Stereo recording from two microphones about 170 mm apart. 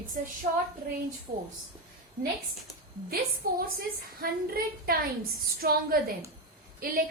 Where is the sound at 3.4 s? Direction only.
60° right (ahead or behind).